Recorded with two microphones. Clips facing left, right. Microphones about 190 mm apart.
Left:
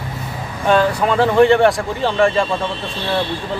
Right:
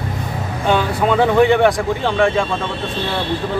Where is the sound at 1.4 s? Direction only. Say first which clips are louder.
Left 2 dB; centre (ahead or behind).